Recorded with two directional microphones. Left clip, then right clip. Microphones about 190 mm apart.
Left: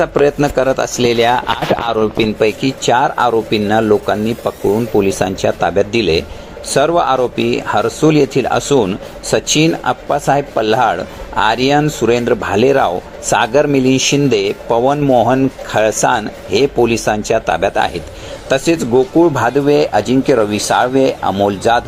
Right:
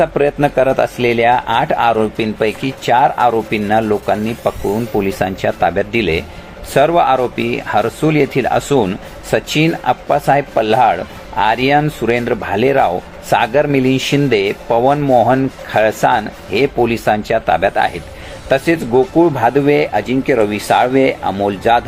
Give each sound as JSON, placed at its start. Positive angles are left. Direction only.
{"t": 0.0, "sound": "speech", "side_deg": -20}
{"t": 0.6, "sound": "speech", "side_deg": 5}
{"t": 0.9, "sound": "speech", "side_deg": -30}
{"t": 1.2, "sound": "speech", "side_deg": 0}
{"t": 20.0, "sound": "speech", "side_deg": -15}
{"t": 20.3, "sound": "speech", "side_deg": 10}